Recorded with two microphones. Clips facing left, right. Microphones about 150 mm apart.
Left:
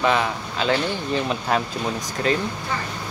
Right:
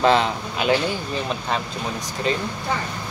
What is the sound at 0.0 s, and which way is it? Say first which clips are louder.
Speech: right 3 dB; 30° right (ahead or behind).